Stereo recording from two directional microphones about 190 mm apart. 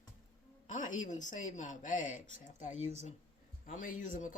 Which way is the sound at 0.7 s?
40° left (ahead or behind).